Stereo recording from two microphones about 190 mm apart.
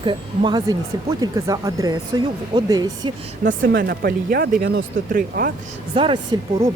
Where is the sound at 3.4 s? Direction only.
50° right (ahead or behind).